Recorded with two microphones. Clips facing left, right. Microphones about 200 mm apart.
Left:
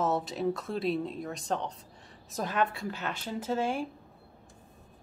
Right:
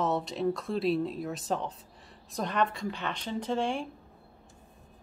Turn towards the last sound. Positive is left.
turn(degrees=5)  # may be behind; listen again after turning